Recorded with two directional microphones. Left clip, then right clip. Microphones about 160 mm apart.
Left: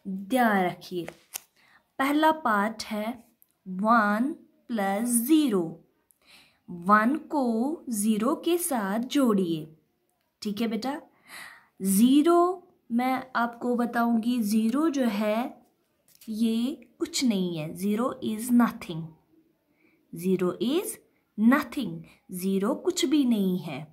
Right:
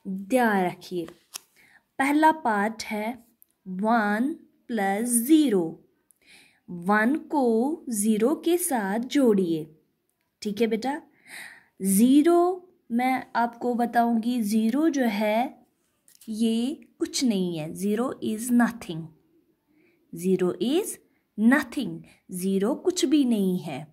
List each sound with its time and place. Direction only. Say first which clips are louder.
0.3 s a woman's voice: right 1 dB; 15° right (ahead or behind)
20.1 s a woman's voice: right 2 dB; 20° right (ahead or behind)